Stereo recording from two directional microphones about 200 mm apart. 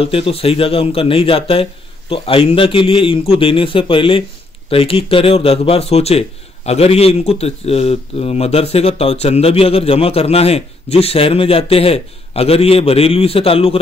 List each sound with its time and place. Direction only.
0.0 s a man's voice: 30° left (ahead or behind)